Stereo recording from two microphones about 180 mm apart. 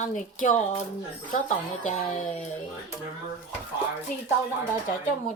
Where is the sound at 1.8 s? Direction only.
45° left (ahead or behind).